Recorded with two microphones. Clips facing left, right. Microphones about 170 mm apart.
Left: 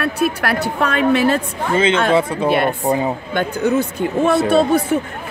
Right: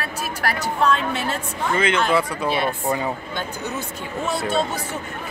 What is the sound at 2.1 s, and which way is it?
Speech, 25° left (ahead or behind).